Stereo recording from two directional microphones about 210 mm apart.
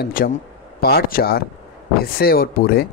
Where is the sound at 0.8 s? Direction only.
45° left (ahead or behind).